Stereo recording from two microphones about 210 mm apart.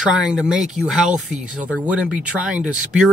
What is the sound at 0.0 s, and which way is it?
Speech, 5° right (ahead or behind).